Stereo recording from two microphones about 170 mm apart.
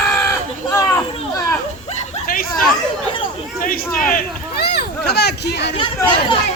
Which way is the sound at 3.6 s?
55° left (ahead or behind).